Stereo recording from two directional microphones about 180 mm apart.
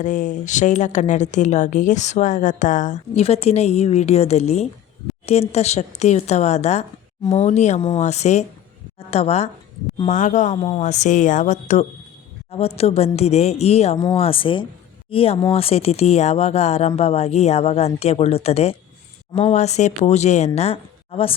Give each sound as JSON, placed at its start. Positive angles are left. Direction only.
{"t": 0.0, "sound": "a woman's voice", "side_deg": 45}